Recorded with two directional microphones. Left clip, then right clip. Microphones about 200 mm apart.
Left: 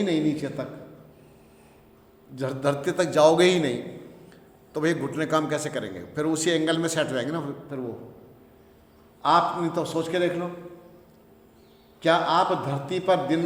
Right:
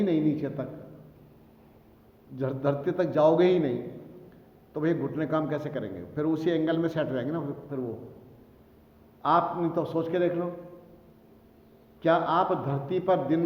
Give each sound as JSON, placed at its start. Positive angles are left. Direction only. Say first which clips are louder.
{"t": 0.0, "sound": "a man's voice", "louder": "left 1 dB", "side_deg": 5}
{"t": 2.3, "sound": "a man's voice", "louder": "left 2 dB", "side_deg": 10}
{"t": 9.2, "sound": "a man's voice", "louder": "left 3 dB", "side_deg": 5}
{"t": 12.0, "sound": "a man's voice", "louder": "left 3 dB", "side_deg": 5}